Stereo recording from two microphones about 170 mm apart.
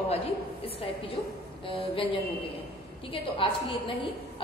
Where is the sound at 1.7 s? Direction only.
30° left (ahead or behind).